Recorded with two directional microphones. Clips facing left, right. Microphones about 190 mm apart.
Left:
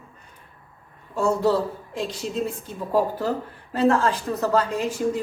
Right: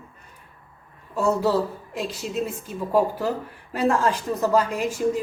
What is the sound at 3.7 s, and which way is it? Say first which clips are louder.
A man's voice: left 2 dB; 15° right (ahead or behind).